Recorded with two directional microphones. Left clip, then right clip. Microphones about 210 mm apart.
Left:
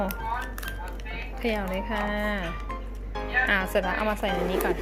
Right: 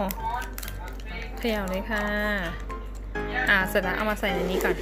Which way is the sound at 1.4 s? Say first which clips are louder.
Even; 10° right (ahead or behind).